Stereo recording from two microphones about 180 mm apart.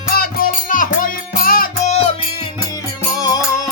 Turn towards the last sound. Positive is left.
turn(degrees=20)  # may be behind; listen again after turning